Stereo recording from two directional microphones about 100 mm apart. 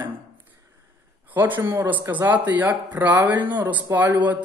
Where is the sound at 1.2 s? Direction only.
20° right (ahead or behind).